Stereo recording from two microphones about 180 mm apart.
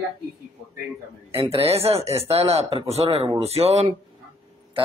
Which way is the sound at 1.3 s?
30° right (ahead or behind).